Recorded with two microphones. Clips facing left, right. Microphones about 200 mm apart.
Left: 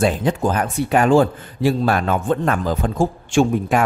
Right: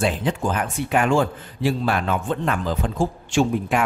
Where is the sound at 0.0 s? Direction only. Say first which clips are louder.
Left 4 dB; 40° left (ahead or behind).